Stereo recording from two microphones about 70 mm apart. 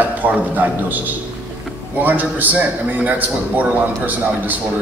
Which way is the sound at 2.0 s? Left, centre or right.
Right.